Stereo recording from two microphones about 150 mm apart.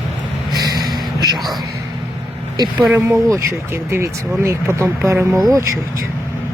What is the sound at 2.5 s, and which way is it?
Speech, 30° right (ahead or behind).